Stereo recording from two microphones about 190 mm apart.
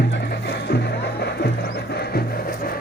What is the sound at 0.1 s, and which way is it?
Music, 60° left (ahead or behind).